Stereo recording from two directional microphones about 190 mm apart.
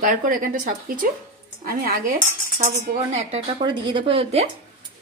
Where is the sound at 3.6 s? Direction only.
25° right (ahead or behind).